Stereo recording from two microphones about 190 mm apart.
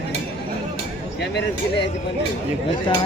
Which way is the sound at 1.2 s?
65° left (ahead or behind).